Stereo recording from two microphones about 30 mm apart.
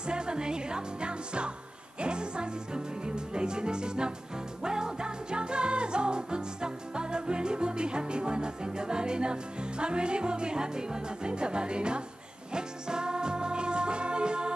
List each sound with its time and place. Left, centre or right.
0.0 s music: right